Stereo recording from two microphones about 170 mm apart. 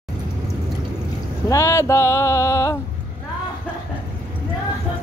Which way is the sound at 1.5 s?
20° left (ahead or behind).